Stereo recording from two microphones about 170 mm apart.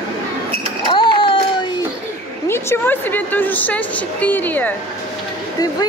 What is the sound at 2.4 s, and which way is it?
A woman's voice, 15° left (ahead or behind).